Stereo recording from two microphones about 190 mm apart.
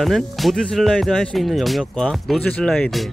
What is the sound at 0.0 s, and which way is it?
Speech, centre (ahead or behind).